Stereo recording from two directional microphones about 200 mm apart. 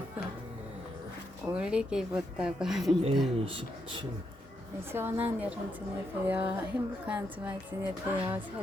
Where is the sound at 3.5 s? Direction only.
25° right (ahead or behind).